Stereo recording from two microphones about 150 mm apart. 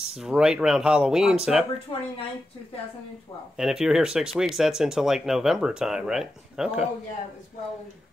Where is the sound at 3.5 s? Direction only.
5° right (ahead or behind).